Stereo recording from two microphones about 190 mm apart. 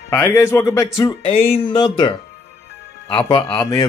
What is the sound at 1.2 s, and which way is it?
Speech, 40° left (ahead or behind).